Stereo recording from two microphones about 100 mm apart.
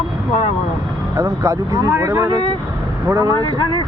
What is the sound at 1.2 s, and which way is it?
Speech, 25° right (ahead or behind).